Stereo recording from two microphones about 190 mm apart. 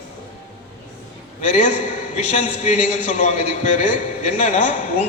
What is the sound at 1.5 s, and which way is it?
A man's voice, 40° left (ahead or behind).